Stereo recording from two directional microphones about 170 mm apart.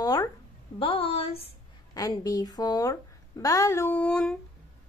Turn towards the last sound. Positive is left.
turn(degrees=5)  # may be behind; listen again after turning